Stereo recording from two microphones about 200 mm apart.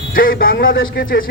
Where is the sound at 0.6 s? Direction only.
75° left (ahead or behind).